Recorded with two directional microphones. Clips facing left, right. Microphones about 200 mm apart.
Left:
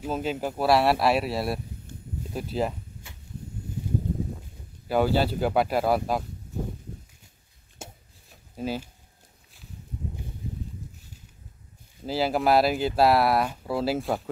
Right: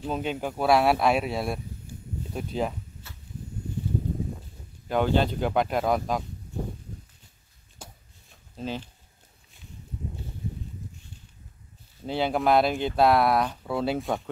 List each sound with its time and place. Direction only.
0.0 s speech: 5° left (ahead or behind)
1.9 s a sound: 10° right (ahead or behind)
2.3 s speech: 5° left (ahead or behind)
4.8 s speech: 5° left (ahead or behind)
7.8 s a sound: 25° left (ahead or behind)
8.5 s speech: 10° left (ahead or behind)
12.0 s speech: 5° left (ahead or behind)